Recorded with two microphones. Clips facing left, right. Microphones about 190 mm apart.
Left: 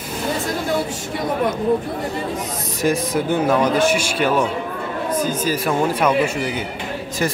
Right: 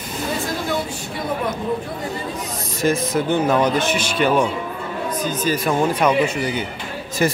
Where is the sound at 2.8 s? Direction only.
10° left (ahead or behind).